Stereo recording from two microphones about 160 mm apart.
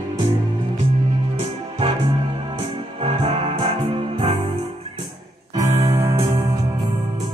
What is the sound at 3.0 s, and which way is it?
Music, 35° right (ahead or behind).